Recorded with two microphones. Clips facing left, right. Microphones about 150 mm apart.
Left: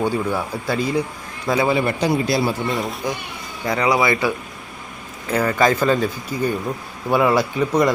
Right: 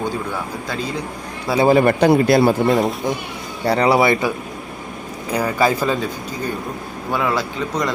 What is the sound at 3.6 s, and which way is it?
Speech, 35° right (ahead or behind).